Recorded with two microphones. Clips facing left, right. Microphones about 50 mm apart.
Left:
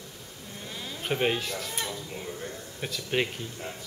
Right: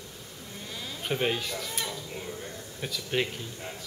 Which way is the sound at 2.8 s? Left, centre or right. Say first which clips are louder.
Left 1 dB; centre.